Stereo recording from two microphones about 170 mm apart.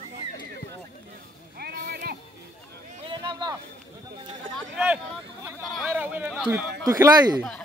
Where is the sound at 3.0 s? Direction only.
30° right (ahead or behind).